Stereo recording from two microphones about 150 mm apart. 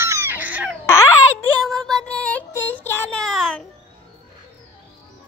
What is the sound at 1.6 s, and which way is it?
Child singing, 5° left (ahead or behind).